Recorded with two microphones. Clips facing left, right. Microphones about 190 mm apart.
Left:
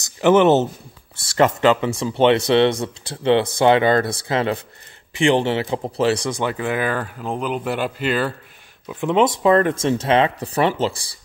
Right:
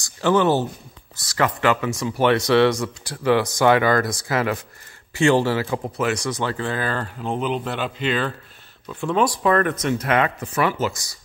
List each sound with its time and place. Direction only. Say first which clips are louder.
0.0 s speech: left 4 dB; 20° left (ahead or behind)
5.1 s speech: even; 20° left (ahead or behind)
6.3 s speech: left 3 dB; 15° left (ahead or behind)
7.2 s speech: even; centre (ahead or behind)
8.8 s speech: left 3 dB; 20° left (ahead or behind)